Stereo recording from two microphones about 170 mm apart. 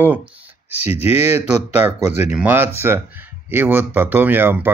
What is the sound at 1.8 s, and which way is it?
Speech, 10° right (ahead or behind).